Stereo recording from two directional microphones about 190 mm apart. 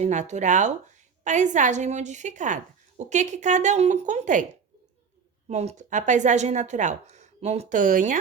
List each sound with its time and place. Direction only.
0.0 s a woman's voice: 40° right (ahead or behind)
5.5 s a woman's voice: 35° right (ahead or behind)